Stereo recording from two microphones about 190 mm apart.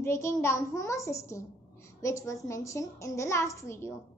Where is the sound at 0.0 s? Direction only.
15° left (ahead or behind).